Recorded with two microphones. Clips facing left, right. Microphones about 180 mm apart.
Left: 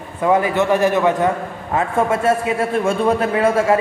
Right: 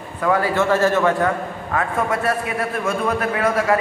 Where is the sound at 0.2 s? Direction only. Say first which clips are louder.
Left 3 dB; 20° left (ahead or behind).